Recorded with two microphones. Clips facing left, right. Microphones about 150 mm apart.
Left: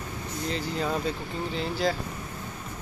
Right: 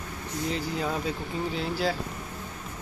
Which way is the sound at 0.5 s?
5° right (ahead or behind).